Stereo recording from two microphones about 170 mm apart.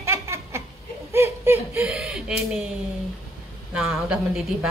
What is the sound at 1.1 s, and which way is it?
Speech, 15° right (ahead or behind).